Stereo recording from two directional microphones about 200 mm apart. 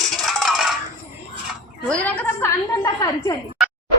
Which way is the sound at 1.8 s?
5° left (ahead or behind).